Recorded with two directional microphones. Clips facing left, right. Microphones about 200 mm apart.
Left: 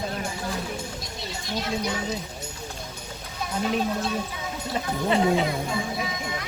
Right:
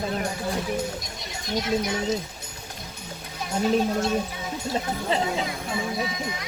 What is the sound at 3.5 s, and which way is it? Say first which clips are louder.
Speech: right 3 dB; 40° right (ahead or behind).